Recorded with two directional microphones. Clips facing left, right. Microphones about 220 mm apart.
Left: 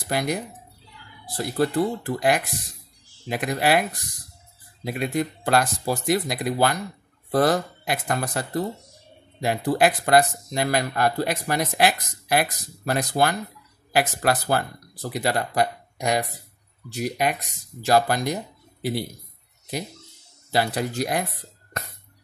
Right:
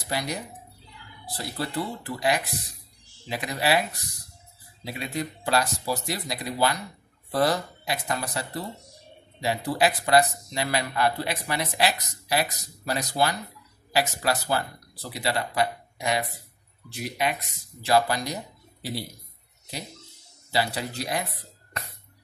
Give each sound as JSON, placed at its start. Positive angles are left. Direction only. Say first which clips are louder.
{"t": 0.1, "sound": "speech", "louder": "left 5 dB", "side_deg": 50}
{"t": 20.5, "sound": "speech", "louder": "left 4 dB", "side_deg": 50}